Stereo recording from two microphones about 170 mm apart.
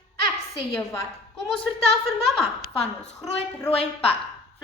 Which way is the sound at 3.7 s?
35° left (ahead or behind).